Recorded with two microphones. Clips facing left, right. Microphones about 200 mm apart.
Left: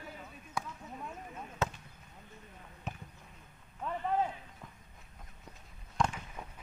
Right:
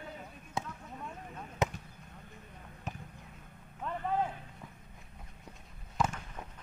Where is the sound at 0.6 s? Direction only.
25° right (ahead or behind).